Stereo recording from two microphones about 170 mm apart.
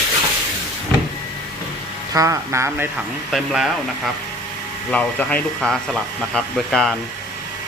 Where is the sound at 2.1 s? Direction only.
20° right (ahead or behind).